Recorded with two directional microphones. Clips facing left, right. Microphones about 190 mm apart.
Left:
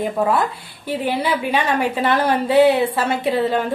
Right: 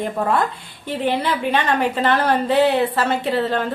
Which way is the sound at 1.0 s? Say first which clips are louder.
Right 1 dB; 10° left (ahead or behind).